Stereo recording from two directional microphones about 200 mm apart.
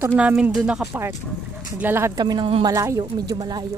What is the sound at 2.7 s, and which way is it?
Speech, 15° right (ahead or behind).